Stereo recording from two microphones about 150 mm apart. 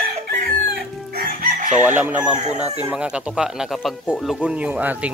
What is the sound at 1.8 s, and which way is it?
Speech, 10° right (ahead or behind).